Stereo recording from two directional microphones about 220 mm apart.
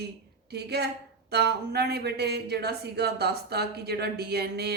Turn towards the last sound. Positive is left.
turn(degrees=-45)  # may be behind; listen again after turning